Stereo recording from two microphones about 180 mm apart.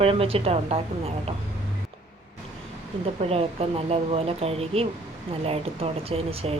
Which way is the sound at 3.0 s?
35° right (ahead or behind).